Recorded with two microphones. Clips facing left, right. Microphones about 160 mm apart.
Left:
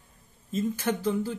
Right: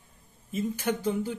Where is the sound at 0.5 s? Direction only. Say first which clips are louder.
Left 1 dB; 15° right (ahead or behind).